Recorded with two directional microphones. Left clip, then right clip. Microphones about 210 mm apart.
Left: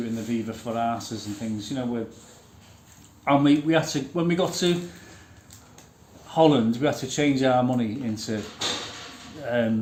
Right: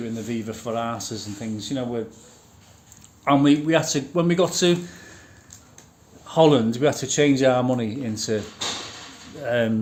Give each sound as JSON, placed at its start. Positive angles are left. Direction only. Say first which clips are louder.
{"t": 0.3, "sound": "speech", "louder": "right 1 dB", "side_deg": -45}
{"t": 3.2, "sound": "speech", "louder": "right 2 dB", "side_deg": -45}
{"t": 6.2, "sound": "speech", "louder": "right 2 dB", "side_deg": -50}
{"t": 9.4, "sound": "speech", "louder": "right 3 dB", "side_deg": -50}